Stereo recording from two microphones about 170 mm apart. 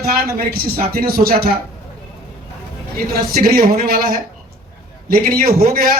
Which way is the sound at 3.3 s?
60° right (ahead or behind).